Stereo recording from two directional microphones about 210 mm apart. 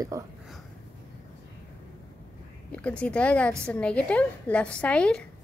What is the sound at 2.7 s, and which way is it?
A woman's voice, 5° left (ahead or behind).